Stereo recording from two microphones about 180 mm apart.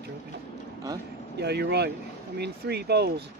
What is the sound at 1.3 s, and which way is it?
Speech, 65° right (ahead or behind).